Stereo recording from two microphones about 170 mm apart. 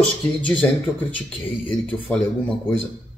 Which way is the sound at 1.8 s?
10° left (ahead or behind).